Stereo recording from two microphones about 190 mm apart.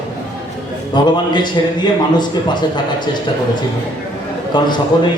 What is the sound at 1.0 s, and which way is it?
A man's voice, 25° left (ahead or behind).